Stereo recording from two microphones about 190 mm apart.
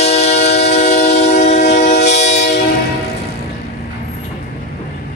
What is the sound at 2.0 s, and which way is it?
Train, 35° left (ahead or behind).